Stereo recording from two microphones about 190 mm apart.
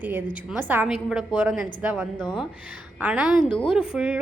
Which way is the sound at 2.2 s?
25° left (ahead or behind).